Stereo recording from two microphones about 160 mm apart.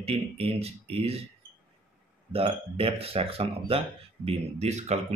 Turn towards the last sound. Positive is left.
turn(degrees=-45)  # may be behind; listen again after turning